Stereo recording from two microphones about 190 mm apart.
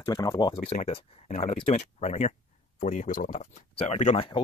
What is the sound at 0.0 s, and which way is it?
Speech, 20° left (ahead or behind).